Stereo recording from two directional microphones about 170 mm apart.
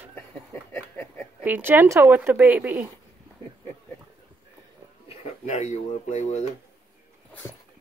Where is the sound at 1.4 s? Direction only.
10° right (ahead or behind).